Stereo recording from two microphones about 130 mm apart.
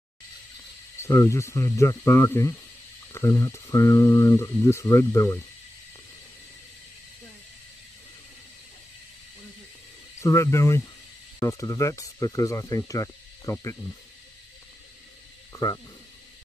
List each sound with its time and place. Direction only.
0.9 s speech: 20° left (ahead or behind)
10.2 s speech: 20° left (ahead or behind)
15.5 s speech: 20° left (ahead or behind)